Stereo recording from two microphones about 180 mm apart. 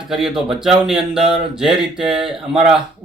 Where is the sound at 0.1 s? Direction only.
Centre (ahead or behind).